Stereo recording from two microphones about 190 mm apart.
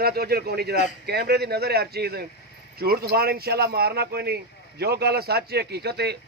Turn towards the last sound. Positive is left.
turn(degrees=-60)  # may be behind; listen again after turning